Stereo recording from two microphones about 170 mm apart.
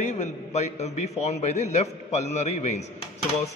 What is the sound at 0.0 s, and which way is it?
A man's voice, 45° left (ahead or behind).